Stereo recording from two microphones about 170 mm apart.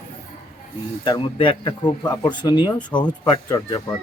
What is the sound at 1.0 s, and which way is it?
Speech, 25° left (ahead or behind).